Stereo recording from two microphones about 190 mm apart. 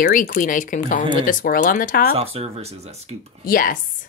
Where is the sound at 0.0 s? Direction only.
45° left (ahead or behind).